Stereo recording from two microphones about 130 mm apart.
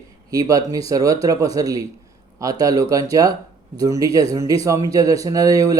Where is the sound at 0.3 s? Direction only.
30° right (ahead or behind).